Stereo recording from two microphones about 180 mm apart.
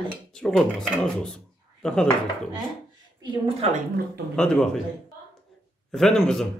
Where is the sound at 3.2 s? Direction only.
30° right (ahead or behind).